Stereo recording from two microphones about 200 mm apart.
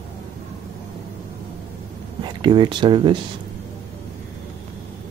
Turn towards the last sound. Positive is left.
turn(degrees=-25)  # may be behind; listen again after turning